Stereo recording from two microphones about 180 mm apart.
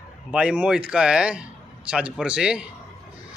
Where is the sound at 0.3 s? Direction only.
5° right (ahead or behind).